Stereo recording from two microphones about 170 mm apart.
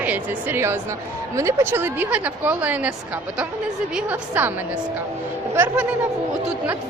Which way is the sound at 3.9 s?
10° right (ahead or behind).